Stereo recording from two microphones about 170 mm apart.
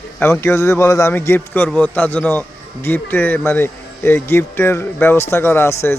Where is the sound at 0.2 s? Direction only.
15° left (ahead or behind).